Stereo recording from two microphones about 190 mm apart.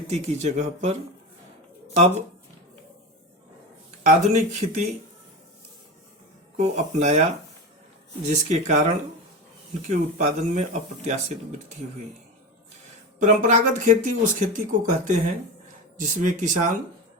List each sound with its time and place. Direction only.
0.1 s speech: 35° right (ahead or behind)
2.0 s speech: 35° right (ahead or behind)
4.0 s speech: 40° right (ahead or behind)
6.6 s speech: 35° right (ahead or behind)
8.3 s speech: 40° right (ahead or behind)
9.9 s speech: 35° right (ahead or behind)
13.1 s speech: 40° right (ahead or behind)